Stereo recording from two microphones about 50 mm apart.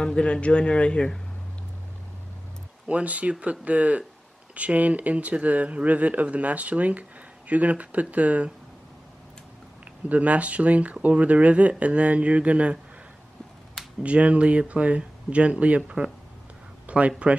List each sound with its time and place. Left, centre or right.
0.0 s a man's voice: left
2.9 s speech: right
10.0 s speech: right
14.0 s speech: right
16.8 s a sound: right